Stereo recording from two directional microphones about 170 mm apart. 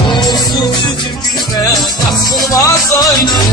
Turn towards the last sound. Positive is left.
turn(degrees=25)  # may be behind; listen again after turning